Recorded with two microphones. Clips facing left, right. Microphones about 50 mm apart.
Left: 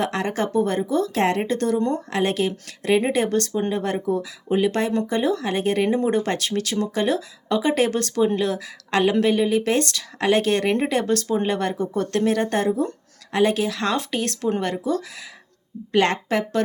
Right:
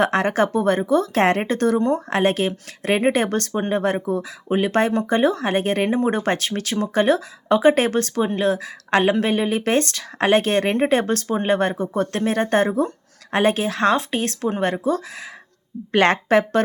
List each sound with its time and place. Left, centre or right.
0.0 s speech: right
5.9 s speech: centre
6.1 s speech: right
15.9 s speech: right